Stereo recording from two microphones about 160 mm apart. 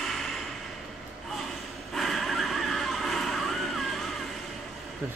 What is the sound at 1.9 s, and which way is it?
Neigh, centre (ahead or behind).